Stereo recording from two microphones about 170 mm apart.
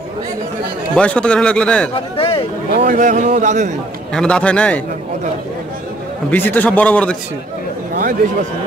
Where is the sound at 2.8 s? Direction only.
50° right (ahead or behind).